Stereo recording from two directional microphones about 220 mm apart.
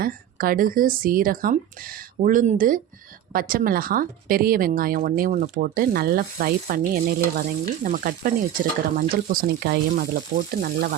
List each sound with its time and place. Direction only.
0.0 s speech: 40° right (ahead or behind)